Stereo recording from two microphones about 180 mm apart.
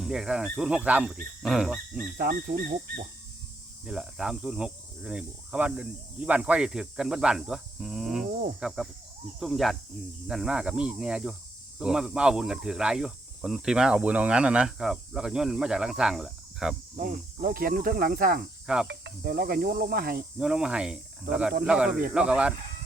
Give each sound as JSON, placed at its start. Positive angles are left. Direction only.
{"t": 0.0, "sound": "speech", "side_deg": -5}
{"t": 2.1, "sound": "cricket", "side_deg": -55}
{"t": 3.8, "sound": "speech", "side_deg": -5}
{"t": 8.3, "sound": "snake", "side_deg": -55}
{"t": 8.6, "sound": "speech", "side_deg": 0}
{"t": 17.0, "sound": "cricket", "side_deg": -55}
{"t": 18.6, "sound": "cricket", "side_deg": -5}
{"t": 18.9, "sound": "snake", "side_deg": -65}
{"t": 20.4, "sound": "speech", "side_deg": -5}